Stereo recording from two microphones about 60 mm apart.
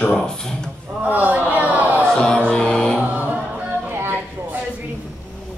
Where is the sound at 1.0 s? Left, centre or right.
Right.